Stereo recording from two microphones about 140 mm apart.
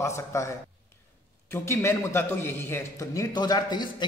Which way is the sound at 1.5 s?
20° left (ahead or behind).